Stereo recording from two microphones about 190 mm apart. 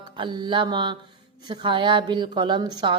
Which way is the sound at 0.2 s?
25° right (ahead or behind).